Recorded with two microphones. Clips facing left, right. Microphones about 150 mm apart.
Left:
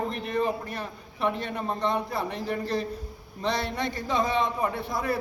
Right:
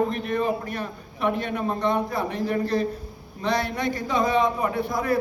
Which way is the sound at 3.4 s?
30° left (ahead or behind).